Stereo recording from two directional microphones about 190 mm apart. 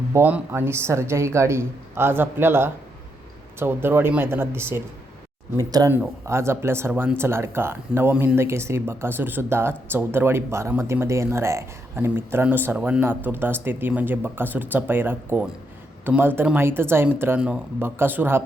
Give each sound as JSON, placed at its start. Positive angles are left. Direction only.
{"t": 0.1, "sound": "speech", "side_deg": -10}